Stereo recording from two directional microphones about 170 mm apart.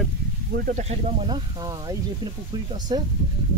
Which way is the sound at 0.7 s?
40° right (ahead or behind).